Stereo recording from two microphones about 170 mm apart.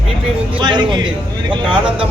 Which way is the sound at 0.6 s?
25° right (ahead or behind).